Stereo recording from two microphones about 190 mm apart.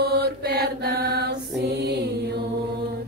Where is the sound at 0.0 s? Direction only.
55° right (ahead or behind).